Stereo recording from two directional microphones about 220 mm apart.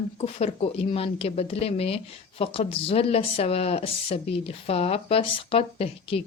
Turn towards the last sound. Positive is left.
turn(degrees=25)  # may be behind; listen again after turning